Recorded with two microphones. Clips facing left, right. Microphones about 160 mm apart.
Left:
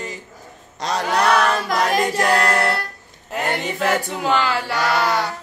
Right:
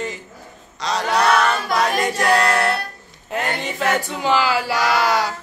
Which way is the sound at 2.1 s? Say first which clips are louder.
Right 3 dB; 10° left (ahead or behind).